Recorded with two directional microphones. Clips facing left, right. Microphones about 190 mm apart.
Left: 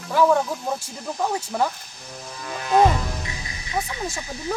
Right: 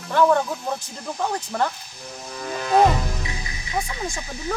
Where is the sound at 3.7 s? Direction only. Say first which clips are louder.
Even; 5° left (ahead or behind).